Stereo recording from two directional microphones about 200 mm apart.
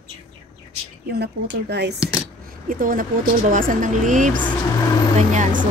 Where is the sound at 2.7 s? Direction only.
45° right (ahead or behind).